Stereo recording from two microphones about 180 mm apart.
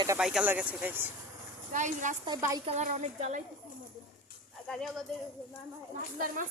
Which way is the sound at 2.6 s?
40° right (ahead or behind).